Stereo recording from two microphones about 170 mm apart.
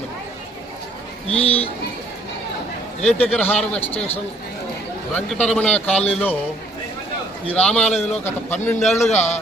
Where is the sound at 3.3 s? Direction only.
10° left (ahead or behind).